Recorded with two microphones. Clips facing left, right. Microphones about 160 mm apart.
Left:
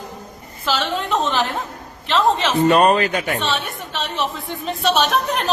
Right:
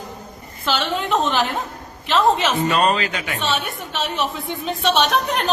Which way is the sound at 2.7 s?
50° left (ahead or behind).